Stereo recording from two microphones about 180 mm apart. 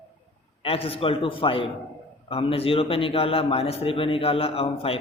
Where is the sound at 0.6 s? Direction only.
30° left (ahead or behind).